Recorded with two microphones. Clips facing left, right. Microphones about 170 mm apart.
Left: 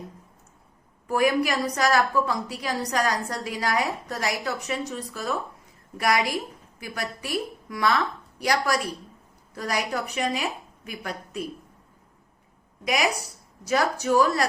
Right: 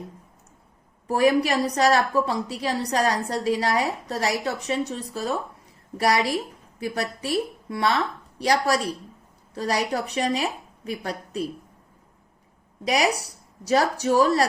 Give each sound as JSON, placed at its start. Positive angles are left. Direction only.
{"t": 1.0, "sound": "a woman's voice", "side_deg": -30}
{"t": 12.8, "sound": "a woman's voice", "side_deg": -35}